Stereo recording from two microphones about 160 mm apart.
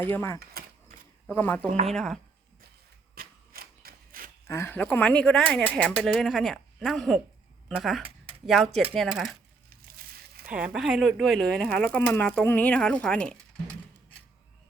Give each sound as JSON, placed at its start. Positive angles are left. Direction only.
{"t": 0.0, "sound": "speech", "side_deg": 15}
{"t": 0.6, "sound": "a sound", "side_deg": -75}
{"t": 1.3, "sound": "speech", "side_deg": 10}
{"t": 3.2, "sound": "a sound", "side_deg": -70}
{"t": 4.4, "sound": "speech", "side_deg": 15}
{"t": 10.5, "sound": "speech", "side_deg": -5}